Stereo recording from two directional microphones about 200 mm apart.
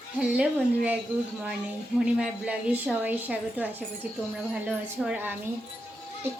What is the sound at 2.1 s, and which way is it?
A woman's voice, 5° right (ahead or behind).